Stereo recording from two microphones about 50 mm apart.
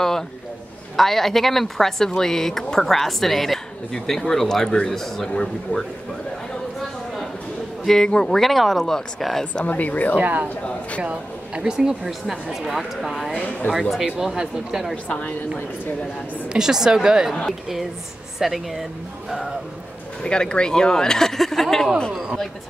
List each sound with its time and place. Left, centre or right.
0.9 s speech: centre
7.8 s speech: centre
9.7 s speech: left
10.1 s speech: right
10.5 s speech: left
11.0 s a woman's voice: right
12.1 s speech: centre
14.0 s a woman's voice: centre
15.0 s speech: left
16.4 s a woman's voice: centre
18.4 s speech: centre
20.2 s speech: centre